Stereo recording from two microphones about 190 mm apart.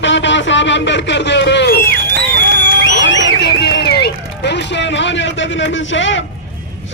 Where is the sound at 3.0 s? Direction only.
70° left (ahead or behind).